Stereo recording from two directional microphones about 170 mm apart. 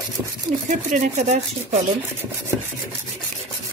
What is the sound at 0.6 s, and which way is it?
Speech, 45° right (ahead or behind).